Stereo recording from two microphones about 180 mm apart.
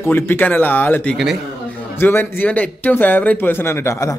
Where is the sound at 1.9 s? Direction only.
10° left (ahead or behind).